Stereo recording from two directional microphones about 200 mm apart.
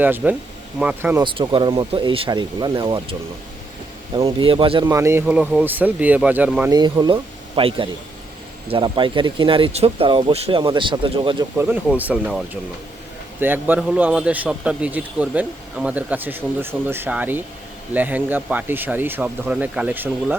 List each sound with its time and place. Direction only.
0.0 s a man's voice: 10° right (ahead or behind)
1.2 s a man's voice: 25° right (ahead or behind); by 6.7 s 10° right (ahead or behind)
6.7 s speech: 20° right (ahead or behind)
11.6 s a man's voice: 10° right (ahead or behind)